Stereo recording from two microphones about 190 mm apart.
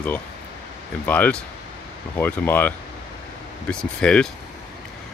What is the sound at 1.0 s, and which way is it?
Speech, 10° left (ahead or behind).